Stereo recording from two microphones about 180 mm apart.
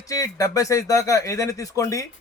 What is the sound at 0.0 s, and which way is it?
A man's voice, 20° left (ahead or behind).